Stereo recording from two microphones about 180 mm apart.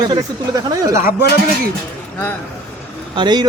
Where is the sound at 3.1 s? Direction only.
25° right (ahead or behind).